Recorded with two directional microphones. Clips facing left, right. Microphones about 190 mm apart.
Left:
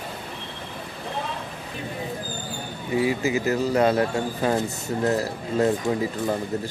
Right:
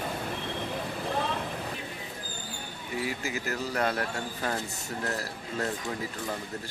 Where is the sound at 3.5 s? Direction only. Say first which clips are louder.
Left 9 dB; 20° left (ahead or behind).